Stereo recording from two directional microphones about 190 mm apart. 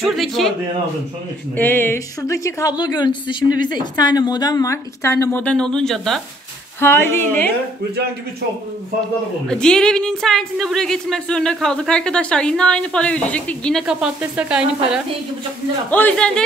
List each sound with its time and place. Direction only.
0.0 s a woman's voice: centre (ahead or behind)
1.6 s a woman's voice: 10° left (ahead or behind)
6.8 s a woman's voice: 10° left (ahead or behind)
9.5 s a woman's voice: 5° left (ahead or behind)
15.9 s a woman's voice: 10° left (ahead or behind)